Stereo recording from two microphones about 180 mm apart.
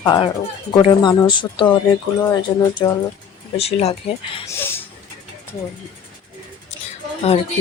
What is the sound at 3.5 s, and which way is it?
Speech, 35° left (ahead or behind).